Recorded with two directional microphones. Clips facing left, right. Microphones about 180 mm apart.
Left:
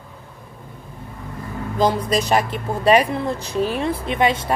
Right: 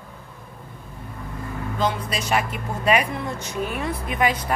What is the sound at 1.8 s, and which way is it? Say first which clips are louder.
Speech: left 7 dB; 35° left (ahead or behind).